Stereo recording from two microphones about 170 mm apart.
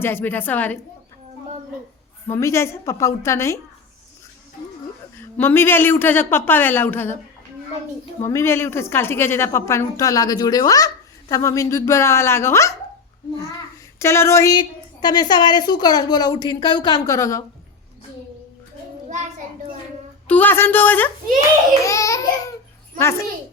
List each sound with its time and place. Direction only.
0.0 s a woman's voice: 10° left (ahead or behind)
2.3 s a woman's voice: 15° left (ahead or behind)
5.4 s a woman's voice: 15° left (ahead or behind)
8.2 s a woman's voice: 15° left (ahead or behind)
14.0 s a woman's voice: 15° left (ahead or behind)
20.2 s a woman's voice: 10° left (ahead or behind)